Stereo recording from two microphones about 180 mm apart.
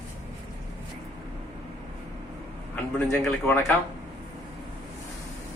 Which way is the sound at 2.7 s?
10° left (ahead or behind).